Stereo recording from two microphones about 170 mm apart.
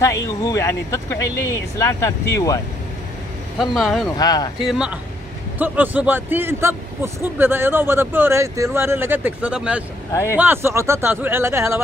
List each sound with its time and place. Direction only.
0.0 s speech: 20° left (ahead or behind)
3.5 s speech: centre (ahead or behind)
4.2 s speech: 25° left (ahead or behind)
4.6 s speech: 5° right (ahead or behind)